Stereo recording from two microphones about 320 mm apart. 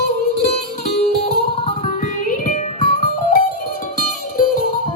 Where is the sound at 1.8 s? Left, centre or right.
Left.